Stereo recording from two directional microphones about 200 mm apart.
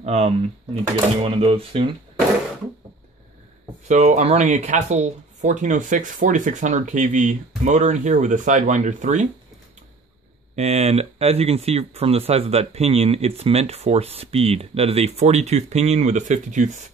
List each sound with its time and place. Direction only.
0.0 s speech: 30° right (ahead or behind)
3.8 s speech: 35° right (ahead or behind)
10.5 s speech: 35° right (ahead or behind)